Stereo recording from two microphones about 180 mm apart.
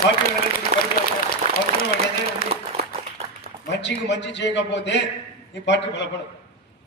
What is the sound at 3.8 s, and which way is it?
A man's voice, 75° left (ahead or behind).